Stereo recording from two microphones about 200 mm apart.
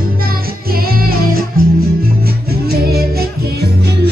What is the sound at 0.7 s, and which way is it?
Music, 50° right (ahead or behind).